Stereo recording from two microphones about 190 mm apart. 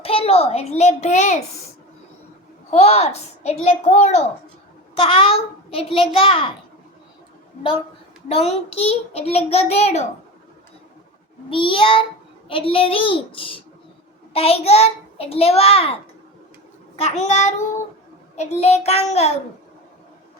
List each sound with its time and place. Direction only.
0.0 s a child's voice: 30° left (ahead or behind)
2.6 s a child's voice: 35° left (ahead or behind)
8.3 s a child's voice: 30° left (ahead or behind)
11.4 s a child's voice: 25° left (ahead or behind)
17.0 s a child's voice: 40° left (ahead or behind)